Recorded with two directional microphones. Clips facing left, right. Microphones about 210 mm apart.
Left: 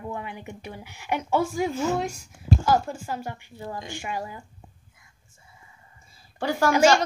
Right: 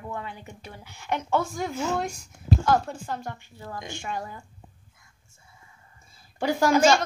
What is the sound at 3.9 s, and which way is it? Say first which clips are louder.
Speech: left 1 dB; 10° left (ahead or behind).